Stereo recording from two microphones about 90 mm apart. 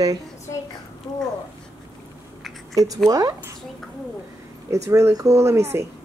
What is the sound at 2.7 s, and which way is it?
Speech, 40° right (ahead or behind).